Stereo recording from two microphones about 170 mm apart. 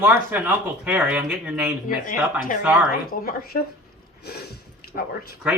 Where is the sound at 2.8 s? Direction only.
55° left (ahead or behind).